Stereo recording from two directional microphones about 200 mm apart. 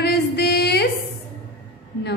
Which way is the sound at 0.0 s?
55° left (ahead or behind).